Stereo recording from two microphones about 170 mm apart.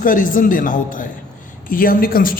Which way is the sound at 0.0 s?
55° left (ahead or behind).